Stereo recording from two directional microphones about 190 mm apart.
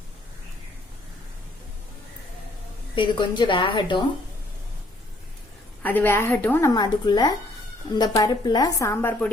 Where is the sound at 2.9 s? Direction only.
25° left (ahead or behind).